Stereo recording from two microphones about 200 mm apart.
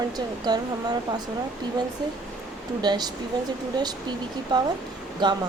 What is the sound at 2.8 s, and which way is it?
Speech, 20° right (ahead or behind).